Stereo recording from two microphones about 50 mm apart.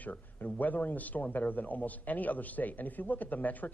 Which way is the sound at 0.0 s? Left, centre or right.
Left.